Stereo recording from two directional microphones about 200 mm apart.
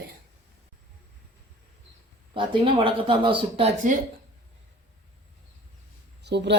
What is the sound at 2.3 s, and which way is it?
Speech, 25° right (ahead or behind).